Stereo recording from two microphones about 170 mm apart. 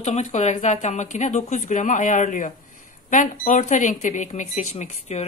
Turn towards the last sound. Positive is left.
turn(degrees=40)  # may be behind; listen again after turning